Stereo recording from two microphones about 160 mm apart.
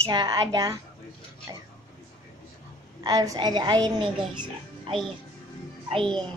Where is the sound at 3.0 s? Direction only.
25° right (ahead or behind).